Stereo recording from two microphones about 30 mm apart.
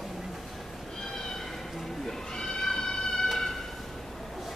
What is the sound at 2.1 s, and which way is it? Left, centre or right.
Cat, centre.